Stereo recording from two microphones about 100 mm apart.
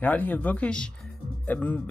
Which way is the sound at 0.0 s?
15° left (ahead or behind).